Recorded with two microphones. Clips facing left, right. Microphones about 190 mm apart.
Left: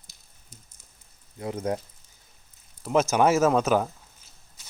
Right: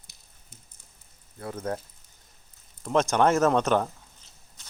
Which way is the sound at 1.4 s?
15° left (ahead or behind).